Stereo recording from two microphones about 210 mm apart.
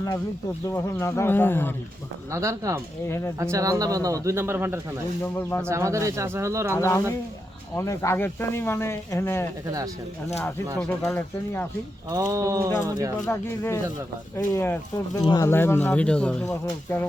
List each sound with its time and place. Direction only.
0.7 s speech: 10° left (ahead or behind)
2.3 s a man's voice: 15° right (ahead or behind)
3.1 s speech: 10° left (ahead or behind)
3.3 s a man's voice: 15° right (ahead or behind)
5.2 s speech: 10° left (ahead or behind)
5.6 s a man's voice: 15° right (ahead or behind)
6.7 s speech: 15° left (ahead or behind)
10.8 s speech: 10° left (ahead or behind)
12.1 s a man's voice: 15° right (ahead or behind)
13.2 s speech: 15° left (ahead or behind)